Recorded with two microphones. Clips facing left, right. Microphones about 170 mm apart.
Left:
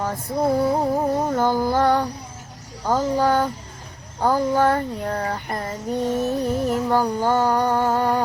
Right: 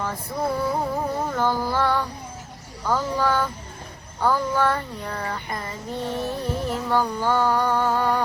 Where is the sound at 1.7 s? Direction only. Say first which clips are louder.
Left 4 dB; 45° left (ahead or behind).